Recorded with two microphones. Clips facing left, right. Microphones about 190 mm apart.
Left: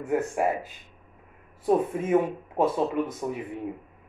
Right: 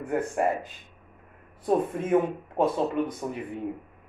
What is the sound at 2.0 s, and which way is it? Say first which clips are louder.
Speech: even; 5° left (ahead or behind).